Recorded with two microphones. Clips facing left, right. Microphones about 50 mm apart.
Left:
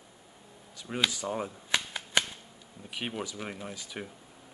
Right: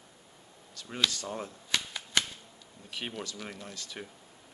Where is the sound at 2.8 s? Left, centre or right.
Centre.